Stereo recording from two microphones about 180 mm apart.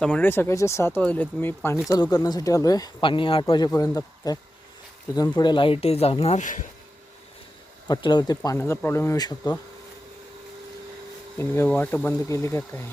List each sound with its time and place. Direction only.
0.0 s speech: 10° left (ahead or behind); by 6.7 s 45° left (ahead or behind)
7.9 s speech: 25° left (ahead or behind)
8.5 s speech: 15° left (ahead or behind)
11.3 s speech: 10° left (ahead or behind)